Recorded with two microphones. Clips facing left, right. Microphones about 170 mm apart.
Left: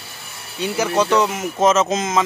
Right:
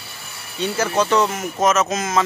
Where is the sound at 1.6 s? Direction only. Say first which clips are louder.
Left 2 dB; 25° left (ahead or behind).